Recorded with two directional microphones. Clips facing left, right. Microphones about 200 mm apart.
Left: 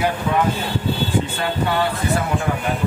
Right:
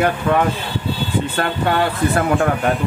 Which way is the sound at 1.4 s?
60° right (ahead or behind).